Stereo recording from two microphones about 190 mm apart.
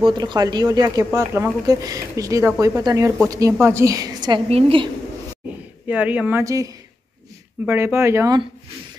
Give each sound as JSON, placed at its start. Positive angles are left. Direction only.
{"t": 0.0, "sound": "a woman's voice", "side_deg": -20}
{"t": 4.5, "sound": "a woman's voice", "side_deg": -30}
{"t": 5.9, "sound": "speech", "side_deg": -10}